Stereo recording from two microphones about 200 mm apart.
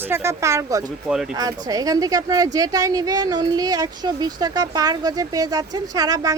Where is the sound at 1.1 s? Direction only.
5° right (ahead or behind).